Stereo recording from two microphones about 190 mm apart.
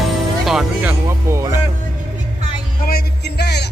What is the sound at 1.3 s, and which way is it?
Music, 15° right (ahead or behind).